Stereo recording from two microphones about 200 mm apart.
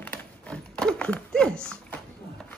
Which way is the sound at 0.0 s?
10° left (ahead or behind).